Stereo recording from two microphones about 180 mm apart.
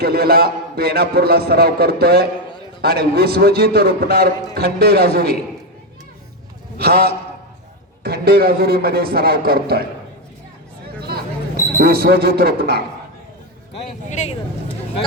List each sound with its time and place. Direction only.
0.0 s a man's voice: 60° right (ahead or behind)
6.7 s a man's voice: 60° right (ahead or behind)
11.8 s a man's voice: 60° right (ahead or behind)
13.7 s speech: 35° left (ahead or behind)